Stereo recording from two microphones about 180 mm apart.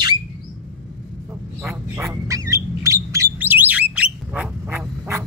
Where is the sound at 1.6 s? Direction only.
15° right (ahead or behind).